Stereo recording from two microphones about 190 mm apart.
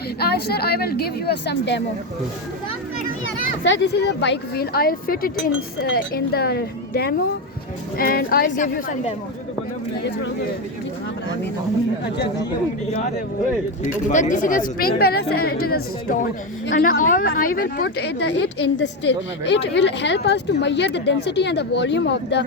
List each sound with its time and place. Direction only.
0.2 s a woman's voice: 55° left (ahead or behind)
3.6 s a woman's voice: 70° left (ahead or behind); by 9.1 s 40° left (ahead or behind)
13.8 s a woman's voice: 40° left (ahead or behind); by 22.4 s 65° left (ahead or behind)